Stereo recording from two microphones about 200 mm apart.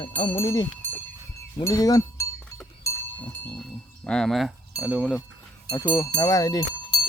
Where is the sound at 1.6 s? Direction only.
20° left (ahead or behind).